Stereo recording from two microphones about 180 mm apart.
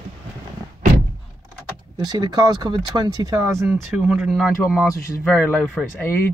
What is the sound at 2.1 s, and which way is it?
Speech, 20° right (ahead or behind).